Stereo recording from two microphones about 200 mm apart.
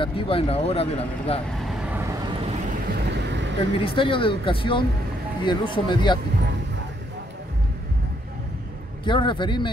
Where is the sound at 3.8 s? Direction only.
25° left (ahead or behind).